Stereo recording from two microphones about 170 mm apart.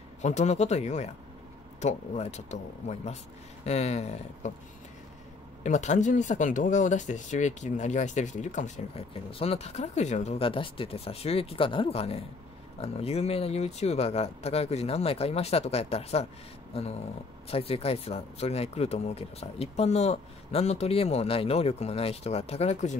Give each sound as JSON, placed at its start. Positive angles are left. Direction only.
{"t": 0.2, "sound": "speech", "side_deg": 40}
{"t": 5.6, "sound": "speech", "side_deg": 45}